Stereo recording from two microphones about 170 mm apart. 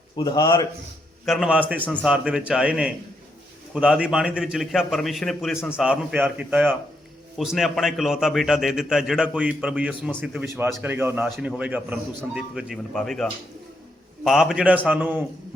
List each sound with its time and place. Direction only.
0.2 s a man's voice: 25° left (ahead or behind)
1.2 s a man's voice: centre (ahead or behind)
1.8 s a man's voice: 10° left (ahead or behind)
2.0 s a man's voice: 5° right (ahead or behind)
11.3 s a man's voice: centre (ahead or behind)
14.3 s a man's voice: centre (ahead or behind)